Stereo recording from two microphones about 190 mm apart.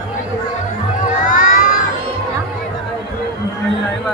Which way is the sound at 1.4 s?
45° left (ahead or behind).